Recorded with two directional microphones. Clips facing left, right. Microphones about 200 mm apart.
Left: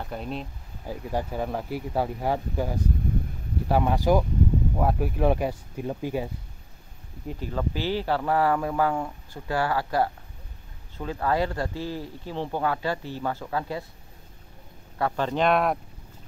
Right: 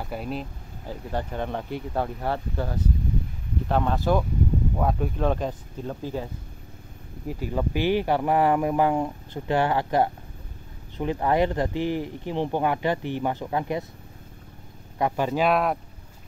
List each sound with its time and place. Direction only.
0.0 s speech: 5° right (ahead or behind)
0.8 s speech: 10° left (ahead or behind)
7.2 s speech: 10° right (ahead or behind)
15.0 s speech: 15° right (ahead or behind)